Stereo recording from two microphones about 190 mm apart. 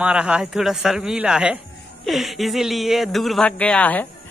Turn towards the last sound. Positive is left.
turn(degrees=10)  # may be behind; listen again after turning